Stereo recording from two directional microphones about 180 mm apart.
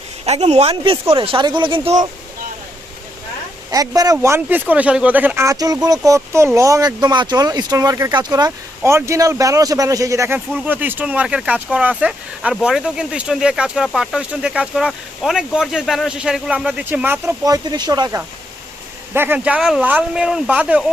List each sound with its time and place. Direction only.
0.3 s a man's voice: 35° right (ahead or behind)
3.7 s speech: 20° right (ahead or behind)
19.1 s speech: 10° right (ahead or behind)